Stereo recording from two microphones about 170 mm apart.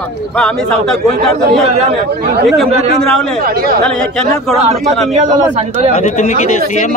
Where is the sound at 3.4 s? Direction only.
60° right (ahead or behind).